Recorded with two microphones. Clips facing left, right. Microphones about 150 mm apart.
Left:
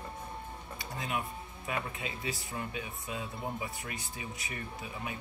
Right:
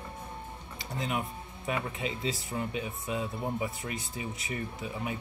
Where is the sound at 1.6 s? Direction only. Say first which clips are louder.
Right 4 dB; 25° right (ahead or behind).